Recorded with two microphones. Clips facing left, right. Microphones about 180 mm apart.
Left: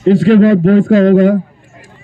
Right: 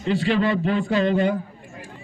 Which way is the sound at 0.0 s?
45° left (ahead or behind).